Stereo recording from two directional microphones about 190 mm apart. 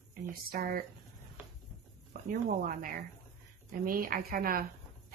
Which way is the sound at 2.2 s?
45° right (ahead or behind).